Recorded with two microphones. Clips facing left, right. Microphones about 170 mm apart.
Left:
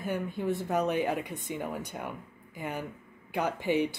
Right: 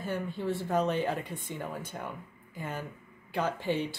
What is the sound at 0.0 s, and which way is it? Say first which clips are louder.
Speech: left 2 dB; 15° left (ahead or behind).